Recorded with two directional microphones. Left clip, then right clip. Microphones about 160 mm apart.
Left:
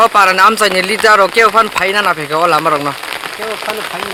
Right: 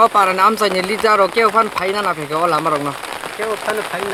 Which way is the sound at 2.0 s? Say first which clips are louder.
Left 5 dB; 20° left (ahead or behind).